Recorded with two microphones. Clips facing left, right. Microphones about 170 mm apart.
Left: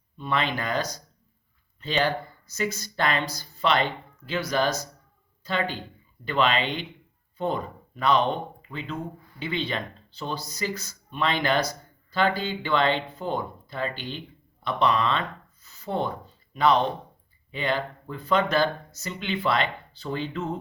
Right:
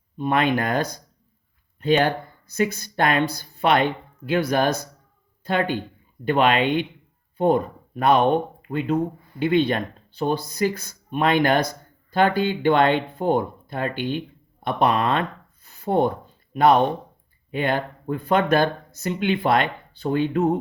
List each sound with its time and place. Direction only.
0.2 s speech: 55° right (ahead or behind)
15.6 s a sound: 55° right (ahead or behind)
17.5 s speech: 55° right (ahead or behind)